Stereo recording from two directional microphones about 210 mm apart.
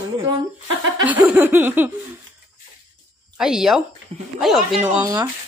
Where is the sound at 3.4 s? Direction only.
5° right (ahead or behind).